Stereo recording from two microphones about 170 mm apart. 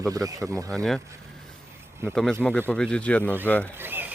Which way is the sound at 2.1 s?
5° left (ahead or behind).